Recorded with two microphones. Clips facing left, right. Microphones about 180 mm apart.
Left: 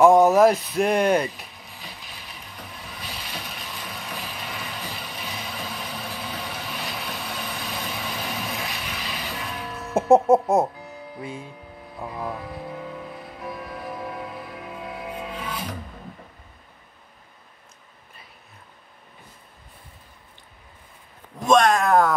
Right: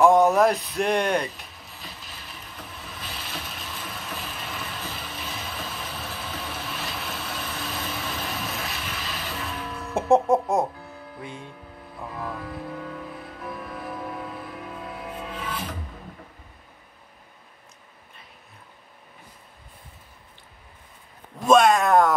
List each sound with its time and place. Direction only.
0.0 s a sound: centre (ahead or behind)
3.2 s vehicle: centre (ahead or behind)
6.0 s vehicle: 10° left (ahead or behind)
12.0 s speech: 15° left (ahead or behind)
12.4 s vehicle: 10° left (ahead or behind)
21.5 s speech: 5° right (ahead or behind)